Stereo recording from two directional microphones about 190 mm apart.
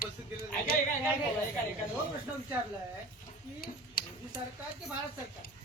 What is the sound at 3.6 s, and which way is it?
Speech, 50° left (ahead or behind).